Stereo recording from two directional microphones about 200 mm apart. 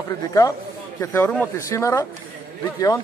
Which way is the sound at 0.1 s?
15° left (ahead or behind).